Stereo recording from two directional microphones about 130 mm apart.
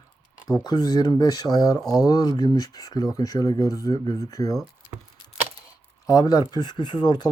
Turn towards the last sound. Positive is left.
turn(degrees=35)  # may be behind; listen again after turning